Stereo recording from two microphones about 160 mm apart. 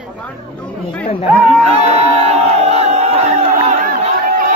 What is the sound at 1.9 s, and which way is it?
Crowd, 40° right (ahead or behind).